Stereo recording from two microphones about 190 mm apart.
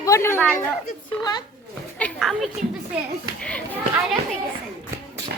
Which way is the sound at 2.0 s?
5° left (ahead or behind).